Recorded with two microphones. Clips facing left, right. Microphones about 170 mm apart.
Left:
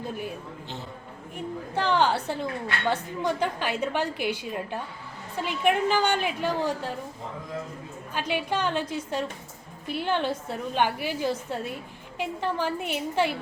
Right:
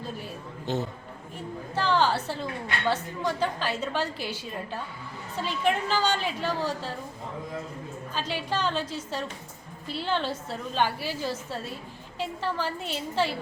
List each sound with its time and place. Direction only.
0.0 s a woman's voice: 15° left (ahead or behind)
0.7 s speech: 45° right (ahead or behind)
1.7 s a woman's voice: 15° left (ahead or behind)
8.1 s a woman's voice: 15° left (ahead or behind)